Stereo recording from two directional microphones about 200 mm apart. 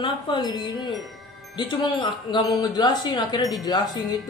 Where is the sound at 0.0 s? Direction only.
20° left (ahead or behind).